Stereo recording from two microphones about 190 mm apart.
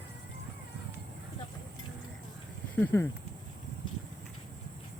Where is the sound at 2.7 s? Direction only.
10° left (ahead or behind).